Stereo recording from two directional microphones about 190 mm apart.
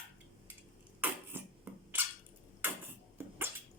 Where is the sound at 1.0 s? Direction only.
10° right (ahead or behind).